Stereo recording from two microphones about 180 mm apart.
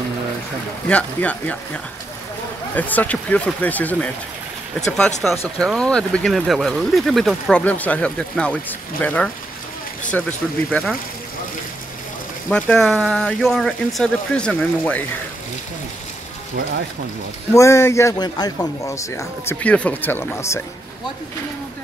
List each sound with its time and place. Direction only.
0.8 s a man's voice: 5° left (ahead or behind)
2.7 s a man's voice: 10° left (ahead or behind)
10.7 s speech: centre (ahead or behind)
12.4 s speech: 5° left (ahead or behind)
17.6 s a man's voice: 15° left (ahead or behind)